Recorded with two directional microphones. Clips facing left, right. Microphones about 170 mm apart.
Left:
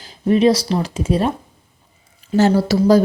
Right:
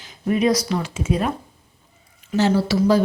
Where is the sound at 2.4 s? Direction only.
40° left (ahead or behind).